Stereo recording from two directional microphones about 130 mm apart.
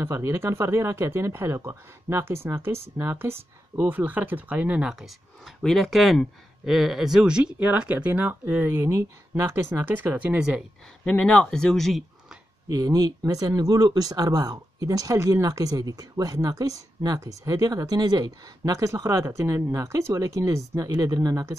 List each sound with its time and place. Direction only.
0.0 s speech: 20° right (ahead or behind)
11.1 s speech: 10° left (ahead or behind)
12.6 s speech: 30° right (ahead or behind)